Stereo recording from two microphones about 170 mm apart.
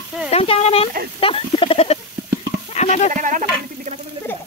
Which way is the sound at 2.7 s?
40° left (ahead or behind).